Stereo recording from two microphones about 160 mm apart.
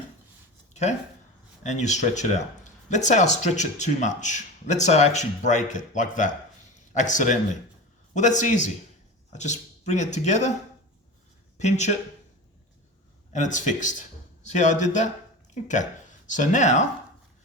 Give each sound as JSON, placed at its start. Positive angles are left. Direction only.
{"t": 0.7, "sound": "a sound", "side_deg": 45}
{"t": 1.6, "sound": "speech", "side_deg": 45}
{"t": 11.5, "sound": "speech", "side_deg": 45}
{"t": 13.3, "sound": "speech", "side_deg": 50}